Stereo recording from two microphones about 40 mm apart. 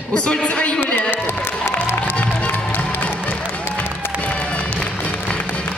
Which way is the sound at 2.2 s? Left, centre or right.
Left.